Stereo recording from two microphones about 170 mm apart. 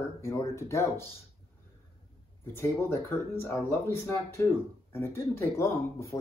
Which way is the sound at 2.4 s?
15° left (ahead or behind).